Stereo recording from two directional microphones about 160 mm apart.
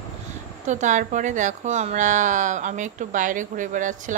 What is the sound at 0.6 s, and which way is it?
Speech, 50° right (ahead or behind).